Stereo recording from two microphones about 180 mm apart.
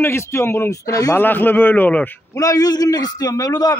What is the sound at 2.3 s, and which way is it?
A man's voice, 20° left (ahead or behind).